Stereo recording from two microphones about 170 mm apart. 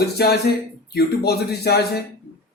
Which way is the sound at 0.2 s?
65° left (ahead or behind).